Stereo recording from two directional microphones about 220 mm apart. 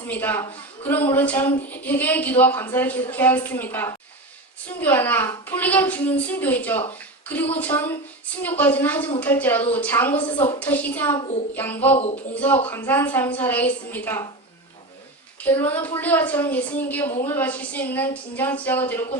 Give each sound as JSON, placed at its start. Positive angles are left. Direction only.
{"t": 0.1, "sound": "a woman's voice", "side_deg": 10}
{"t": 10.2, "sound": "a woman's voice", "side_deg": 20}
{"t": 10.6, "sound": "a woman's voice", "side_deg": 5}
{"t": 11.9, "sound": "a woman's voice", "side_deg": 30}
{"t": 12.3, "sound": "a woman's voice", "side_deg": 5}
{"t": 15.4, "sound": "a woman's voice", "side_deg": 10}